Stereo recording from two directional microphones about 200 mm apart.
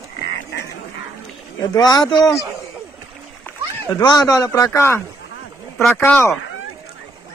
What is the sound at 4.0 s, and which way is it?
A man's voice, 20° left (ahead or behind).